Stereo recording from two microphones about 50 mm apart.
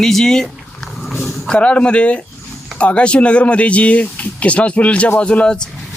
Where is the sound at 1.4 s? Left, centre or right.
Left.